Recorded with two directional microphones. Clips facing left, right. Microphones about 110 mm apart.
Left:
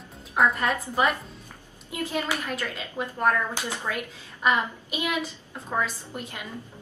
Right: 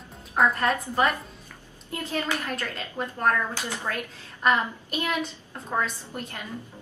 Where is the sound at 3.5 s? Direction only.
15° left (ahead or behind).